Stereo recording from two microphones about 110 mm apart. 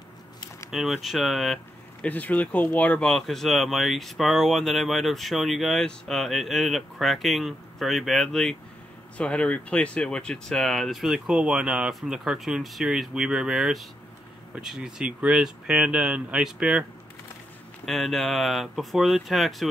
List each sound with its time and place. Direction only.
0.7 s speech: centre (ahead or behind)
2.0 s speech: 15° left (ahead or behind); by 16.8 s 5° right (ahead or behind)
17.8 s speech: centre (ahead or behind)